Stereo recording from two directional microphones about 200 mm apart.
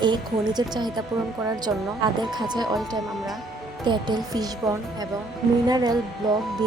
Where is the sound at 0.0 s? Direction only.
20° right (ahead or behind).